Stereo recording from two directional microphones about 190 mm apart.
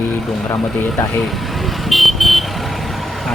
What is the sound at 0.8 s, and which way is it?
Speech, 10° left (ahead or behind).